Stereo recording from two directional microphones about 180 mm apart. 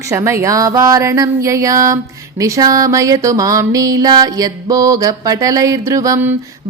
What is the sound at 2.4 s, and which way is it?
Music, 20° right (ahead or behind).